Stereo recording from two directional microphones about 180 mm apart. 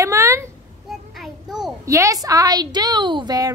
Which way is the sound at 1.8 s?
15° right (ahead or behind).